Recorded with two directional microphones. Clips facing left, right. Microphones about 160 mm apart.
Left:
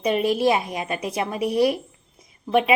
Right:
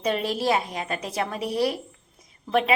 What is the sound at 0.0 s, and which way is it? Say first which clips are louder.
Speech: left 5 dB; 15° left (ahead or behind).